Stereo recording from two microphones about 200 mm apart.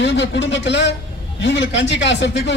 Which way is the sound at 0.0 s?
60° left (ahead or behind).